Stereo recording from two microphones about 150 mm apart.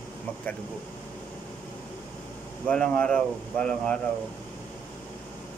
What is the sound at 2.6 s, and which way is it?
Speech, 5° left (ahead or behind).